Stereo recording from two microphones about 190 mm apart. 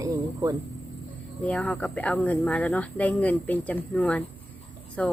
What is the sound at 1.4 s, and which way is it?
Speech, 5° left (ahead or behind).